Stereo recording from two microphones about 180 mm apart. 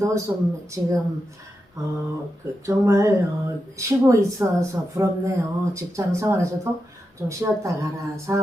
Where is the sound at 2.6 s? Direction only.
15° right (ahead or behind).